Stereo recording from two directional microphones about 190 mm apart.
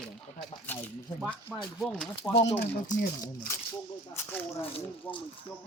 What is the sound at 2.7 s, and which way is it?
Speech, 40° left (ahead or behind).